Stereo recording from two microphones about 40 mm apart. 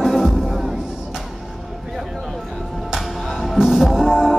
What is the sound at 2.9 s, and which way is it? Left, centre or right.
Music, centre.